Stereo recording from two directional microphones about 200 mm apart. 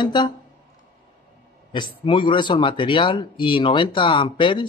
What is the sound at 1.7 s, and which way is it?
Speech, 25° left (ahead or behind).